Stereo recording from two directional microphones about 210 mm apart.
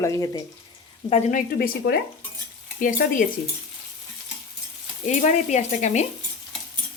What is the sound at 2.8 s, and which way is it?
Stir, 40° left (ahead or behind).